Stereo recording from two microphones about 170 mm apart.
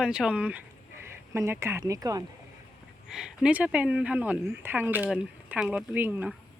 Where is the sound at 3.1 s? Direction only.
5° right (ahead or behind).